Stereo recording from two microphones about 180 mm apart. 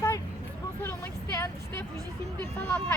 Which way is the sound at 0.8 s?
15° left (ahead or behind).